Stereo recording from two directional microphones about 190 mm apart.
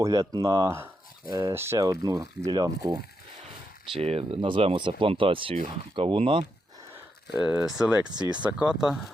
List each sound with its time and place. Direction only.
0.0 s speech: 20° right (ahead or behind)
3.9 s speech: 30° right (ahead or behind)
7.3 s speech: 5° right (ahead or behind)
8.1 s speech: 20° right (ahead or behind)
8.4 s speech: 5° right (ahead or behind)